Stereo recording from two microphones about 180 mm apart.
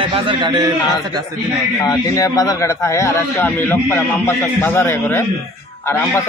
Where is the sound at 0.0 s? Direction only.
30° right (ahead or behind).